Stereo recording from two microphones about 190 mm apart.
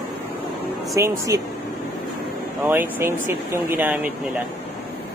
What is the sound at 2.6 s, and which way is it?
Speech, 10° right (ahead or behind).